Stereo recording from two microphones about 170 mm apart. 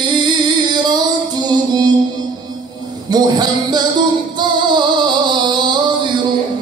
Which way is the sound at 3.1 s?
25° right (ahead or behind).